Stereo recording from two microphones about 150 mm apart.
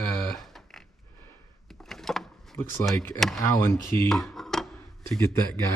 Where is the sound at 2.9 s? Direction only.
20° left (ahead or behind).